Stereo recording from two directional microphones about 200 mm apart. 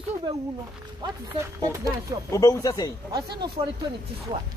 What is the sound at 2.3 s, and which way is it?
Speech, 15° left (ahead or behind).